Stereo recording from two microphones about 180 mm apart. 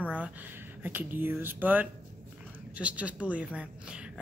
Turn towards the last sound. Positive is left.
turn(degrees=-5)  # may be behind; listen again after turning